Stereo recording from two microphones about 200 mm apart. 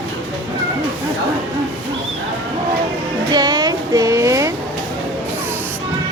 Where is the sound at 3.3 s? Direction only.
20° right (ahead or behind).